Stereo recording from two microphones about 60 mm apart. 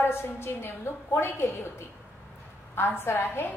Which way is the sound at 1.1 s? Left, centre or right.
Left.